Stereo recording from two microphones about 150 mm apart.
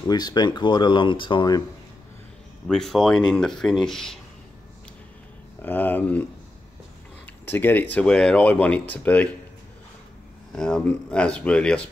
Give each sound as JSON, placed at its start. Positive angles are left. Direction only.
{"t": 0.0, "sound": "speech", "side_deg": 25}
{"t": 2.7, "sound": "speech", "side_deg": 0}
{"t": 5.6, "sound": "speech", "side_deg": 10}
{"t": 7.4, "sound": "speech", "side_deg": 15}
{"t": 10.5, "sound": "speech", "side_deg": 5}